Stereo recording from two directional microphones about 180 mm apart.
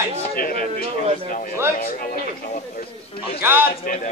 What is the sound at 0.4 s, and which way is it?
A man's voice, 55° left (ahead or behind).